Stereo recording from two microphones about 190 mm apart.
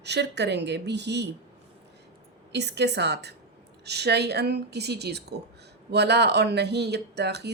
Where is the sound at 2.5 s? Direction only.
60° right (ahead or behind).